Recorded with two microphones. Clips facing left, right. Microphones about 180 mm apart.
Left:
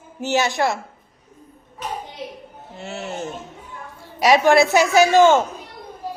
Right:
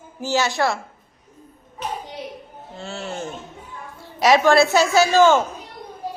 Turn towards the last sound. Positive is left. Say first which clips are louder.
# left 2 dB
turn(degrees=20)  # may be behind; listen again after turning